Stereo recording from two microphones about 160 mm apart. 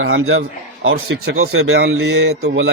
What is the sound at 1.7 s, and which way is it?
Mantra, 90° right.